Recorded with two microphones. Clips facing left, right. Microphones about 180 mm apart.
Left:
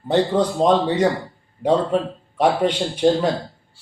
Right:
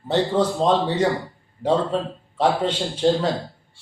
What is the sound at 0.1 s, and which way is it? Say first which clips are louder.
Speech: left 2 dB; 15° left (ahead or behind).